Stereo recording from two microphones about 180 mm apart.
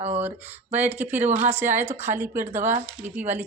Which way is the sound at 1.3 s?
40° right (ahead or behind).